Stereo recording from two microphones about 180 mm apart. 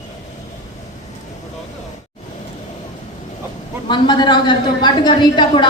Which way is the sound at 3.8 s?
25° left (ahead or behind).